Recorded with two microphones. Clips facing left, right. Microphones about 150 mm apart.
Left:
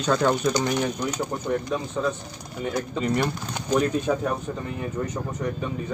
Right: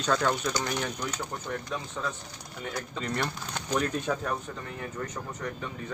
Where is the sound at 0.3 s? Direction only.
20° left (ahead or behind).